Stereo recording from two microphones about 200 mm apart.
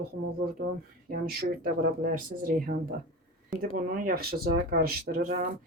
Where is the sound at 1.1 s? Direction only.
50° right (ahead or behind).